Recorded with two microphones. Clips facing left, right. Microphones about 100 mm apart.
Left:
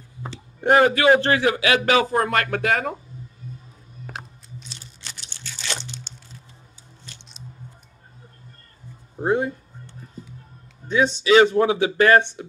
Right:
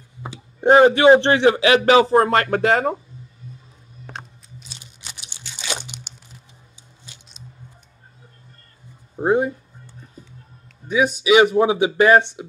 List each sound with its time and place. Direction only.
0.2 s a sound: 10° right (ahead or behind)
0.7 s speech: 25° right (ahead or behind)
4.1 s crunch: centre (ahead or behind)
4.6 s crunch: 15° right (ahead or behind)
9.1 s speech: 20° right (ahead or behind)
11.1 s speech: 15° right (ahead or behind)